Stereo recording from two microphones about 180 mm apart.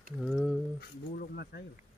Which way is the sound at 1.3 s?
65° left (ahead or behind).